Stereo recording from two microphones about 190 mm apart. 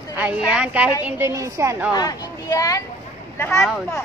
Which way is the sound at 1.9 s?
20° left (ahead or behind).